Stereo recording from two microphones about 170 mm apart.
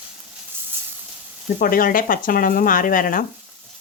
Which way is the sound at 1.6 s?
55° left (ahead or behind).